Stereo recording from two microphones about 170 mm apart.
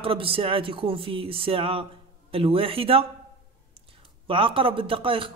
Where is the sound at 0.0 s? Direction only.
30° right (ahead or behind).